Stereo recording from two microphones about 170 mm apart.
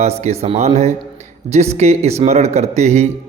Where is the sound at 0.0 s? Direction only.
40° right (ahead or behind).